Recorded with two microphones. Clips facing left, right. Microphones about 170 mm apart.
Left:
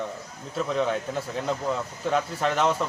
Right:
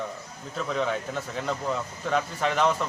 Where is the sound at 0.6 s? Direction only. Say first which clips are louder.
Left 2 dB; centre (ahead or behind).